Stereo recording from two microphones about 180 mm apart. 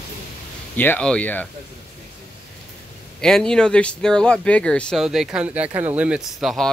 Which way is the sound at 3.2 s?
5° left (ahead or behind).